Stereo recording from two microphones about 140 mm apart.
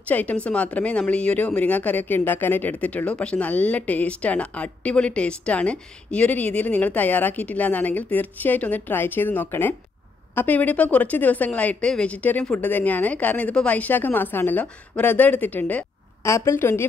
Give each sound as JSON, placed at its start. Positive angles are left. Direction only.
{"t": 0.1, "sound": "a woman's voice", "side_deg": 10}